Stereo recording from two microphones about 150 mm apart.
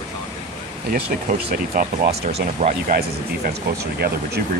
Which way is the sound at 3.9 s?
90° right.